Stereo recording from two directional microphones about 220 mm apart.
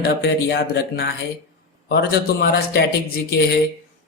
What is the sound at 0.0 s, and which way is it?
A man's voice, 45° left (ahead or behind).